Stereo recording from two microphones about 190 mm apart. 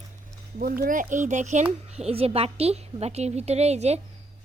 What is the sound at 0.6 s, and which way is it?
A woman's voice, 45° right (ahead or behind).